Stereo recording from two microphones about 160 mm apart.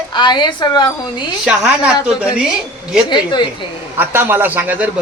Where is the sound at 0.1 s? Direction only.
30° left (ahead or behind).